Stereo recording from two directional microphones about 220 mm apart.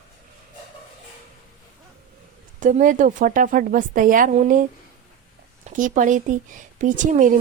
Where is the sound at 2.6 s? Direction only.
35° right (ahead or behind).